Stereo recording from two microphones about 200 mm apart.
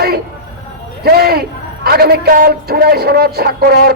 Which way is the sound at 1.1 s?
50° right (ahead or behind).